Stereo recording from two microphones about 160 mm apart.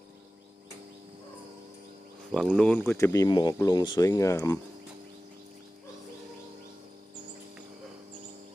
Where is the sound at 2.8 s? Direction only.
15° left (ahead or behind).